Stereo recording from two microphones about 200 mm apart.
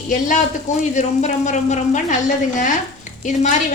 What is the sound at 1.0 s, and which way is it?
A woman's voice, 35° left (ahead or behind).